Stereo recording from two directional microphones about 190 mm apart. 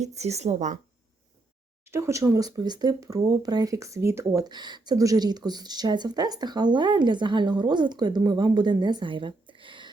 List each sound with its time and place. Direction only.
0.0 s a woman's voice: 35° right (ahead or behind)
1.9 s speech: 15° right (ahead or behind)